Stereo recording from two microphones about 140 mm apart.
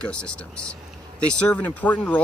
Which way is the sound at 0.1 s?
5° left (ahead or behind).